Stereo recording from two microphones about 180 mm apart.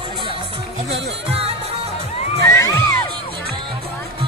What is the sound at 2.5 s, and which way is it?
Children shouting, 15° left (ahead or behind).